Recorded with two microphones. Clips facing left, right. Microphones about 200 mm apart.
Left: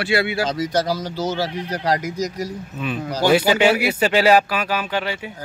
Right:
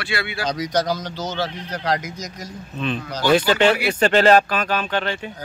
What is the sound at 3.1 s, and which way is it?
Speech, 10° left (ahead or behind).